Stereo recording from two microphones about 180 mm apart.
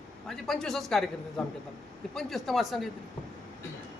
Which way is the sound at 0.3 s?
Centre (ahead or behind).